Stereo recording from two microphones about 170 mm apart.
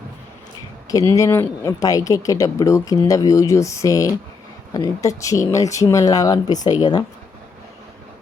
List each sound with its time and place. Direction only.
0.9 s speech: 20° left (ahead or behind)